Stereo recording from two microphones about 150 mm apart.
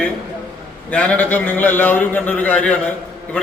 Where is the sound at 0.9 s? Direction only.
10° left (ahead or behind).